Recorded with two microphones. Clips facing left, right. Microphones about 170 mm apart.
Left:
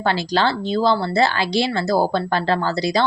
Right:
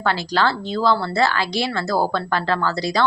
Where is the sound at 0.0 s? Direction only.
25° left (ahead or behind).